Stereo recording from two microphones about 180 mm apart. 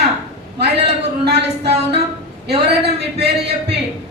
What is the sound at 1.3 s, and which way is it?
Speech, 65° right (ahead or behind).